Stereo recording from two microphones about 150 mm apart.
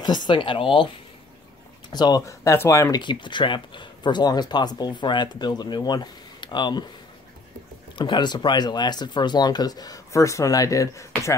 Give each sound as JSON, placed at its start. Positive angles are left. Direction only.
{"t": 0.3, "sound": "speech", "side_deg": 35}
{"t": 3.0, "sound": "speech", "side_deg": 30}
{"t": 8.0, "sound": "speech", "side_deg": 30}